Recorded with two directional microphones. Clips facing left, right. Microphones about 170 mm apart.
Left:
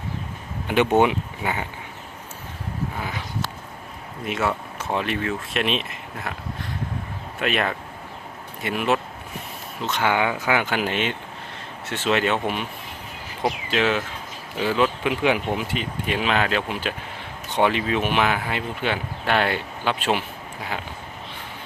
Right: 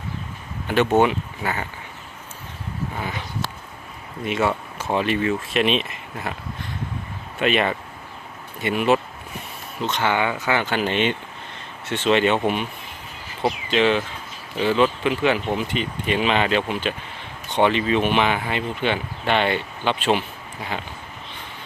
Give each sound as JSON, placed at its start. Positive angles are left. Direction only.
{"t": 0.7, "sound": "speech", "side_deg": 15}
{"t": 3.0, "sound": "speech", "side_deg": 0}
{"t": 4.3, "sound": "speech", "side_deg": 0}